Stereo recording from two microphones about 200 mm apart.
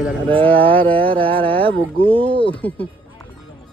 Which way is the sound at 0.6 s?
25° right (ahead or behind).